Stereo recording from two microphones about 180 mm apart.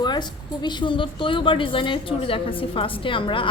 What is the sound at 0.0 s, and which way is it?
A woman's voice, 25° left (ahead or behind).